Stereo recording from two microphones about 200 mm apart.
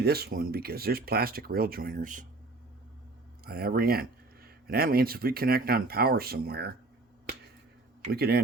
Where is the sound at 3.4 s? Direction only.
50° right (ahead or behind).